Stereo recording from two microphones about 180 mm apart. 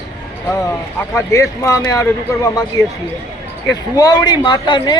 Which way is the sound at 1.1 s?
15° left (ahead or behind).